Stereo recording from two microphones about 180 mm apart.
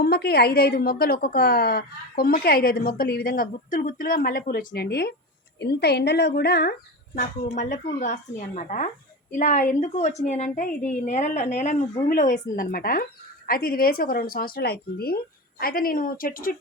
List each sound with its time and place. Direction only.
0.0 s a woman's voice: 60° left (ahead or behind)
7.2 s a woman's voice: 45° left (ahead or behind)